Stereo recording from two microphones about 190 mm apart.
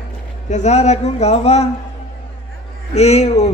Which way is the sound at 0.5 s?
35° left (ahead or behind).